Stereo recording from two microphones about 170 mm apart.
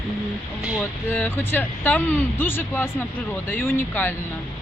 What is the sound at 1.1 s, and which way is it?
Speech, 10° left (ahead or behind).